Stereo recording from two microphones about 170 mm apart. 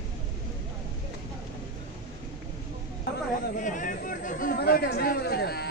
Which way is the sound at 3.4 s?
50° left (ahead or behind).